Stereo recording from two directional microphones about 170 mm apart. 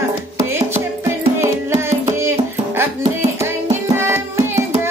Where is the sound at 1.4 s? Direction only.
15° right (ahead or behind).